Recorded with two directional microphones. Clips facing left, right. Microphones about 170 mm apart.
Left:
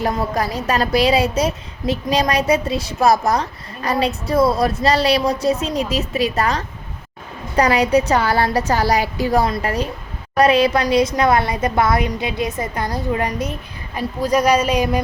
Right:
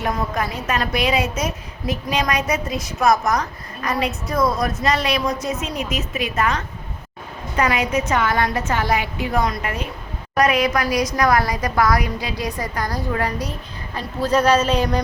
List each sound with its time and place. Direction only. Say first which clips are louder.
0.0 s a woman's voice: left 3 dB; 35° left (ahead or behind); by 15.0 s 10° left (ahead or behind)